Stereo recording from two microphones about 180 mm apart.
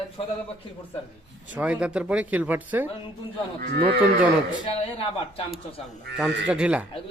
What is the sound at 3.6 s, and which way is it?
Speech, 55° right (ahead or behind).